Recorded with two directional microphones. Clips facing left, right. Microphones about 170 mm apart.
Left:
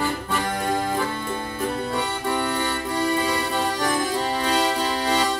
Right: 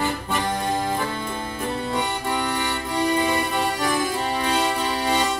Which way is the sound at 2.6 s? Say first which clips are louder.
Even; 15° right (ahead or behind).